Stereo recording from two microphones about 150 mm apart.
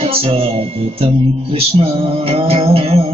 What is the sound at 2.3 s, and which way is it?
Music, 40° right (ahead or behind).